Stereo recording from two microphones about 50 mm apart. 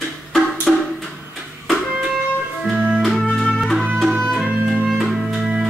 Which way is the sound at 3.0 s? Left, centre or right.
Centre.